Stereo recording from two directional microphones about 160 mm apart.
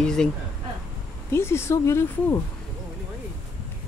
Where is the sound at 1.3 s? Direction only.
15° left (ahead or behind).